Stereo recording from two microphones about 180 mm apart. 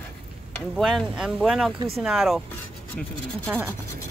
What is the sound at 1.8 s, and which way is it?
Speech, 35° right (ahead or behind).